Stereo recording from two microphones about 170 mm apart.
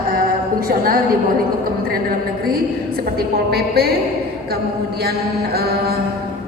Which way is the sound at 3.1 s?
65° right (ahead or behind).